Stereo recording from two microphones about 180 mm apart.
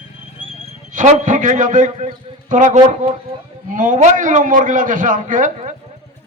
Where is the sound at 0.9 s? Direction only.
45° right (ahead or behind).